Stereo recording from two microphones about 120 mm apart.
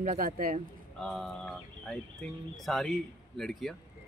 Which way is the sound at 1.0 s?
Centre (ahead or behind).